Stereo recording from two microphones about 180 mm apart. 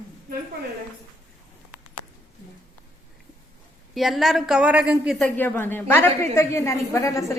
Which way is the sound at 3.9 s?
Centre (ahead or behind).